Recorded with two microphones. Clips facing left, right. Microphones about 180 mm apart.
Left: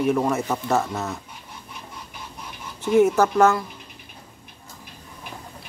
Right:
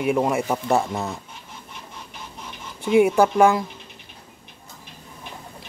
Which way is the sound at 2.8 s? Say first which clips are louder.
Right 1 dB; 10° right (ahead or behind).